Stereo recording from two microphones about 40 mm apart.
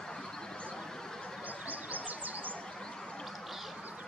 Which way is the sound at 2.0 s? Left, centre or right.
Right.